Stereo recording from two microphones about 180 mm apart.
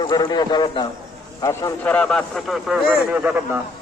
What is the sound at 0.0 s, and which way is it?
A man's voice, 20° left (ahead or behind).